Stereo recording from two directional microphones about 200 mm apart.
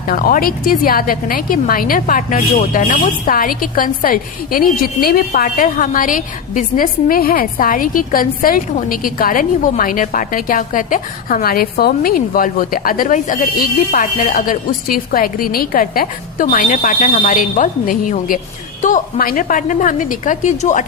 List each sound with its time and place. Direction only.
0.1 s a woman's voice: 45° left (ahead or behind)